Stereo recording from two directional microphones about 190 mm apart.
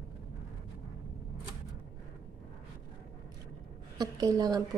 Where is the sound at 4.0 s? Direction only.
20° right (ahead or behind).